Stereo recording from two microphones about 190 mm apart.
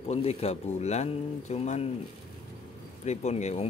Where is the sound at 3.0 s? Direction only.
35° left (ahead or behind).